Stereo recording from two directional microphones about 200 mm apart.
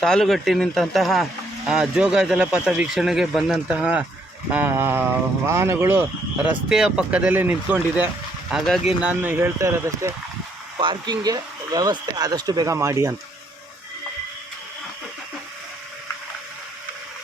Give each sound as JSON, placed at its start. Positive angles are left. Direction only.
{"t": 0.0, "sound": "speech", "side_deg": 5}